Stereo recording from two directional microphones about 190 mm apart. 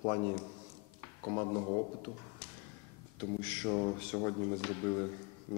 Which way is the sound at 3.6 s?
15° left (ahead or behind).